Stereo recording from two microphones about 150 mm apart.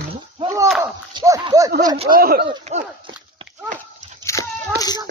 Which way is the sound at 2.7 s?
45° right (ahead or behind).